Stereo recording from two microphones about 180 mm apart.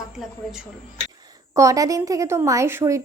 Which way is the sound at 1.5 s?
20° right (ahead or behind).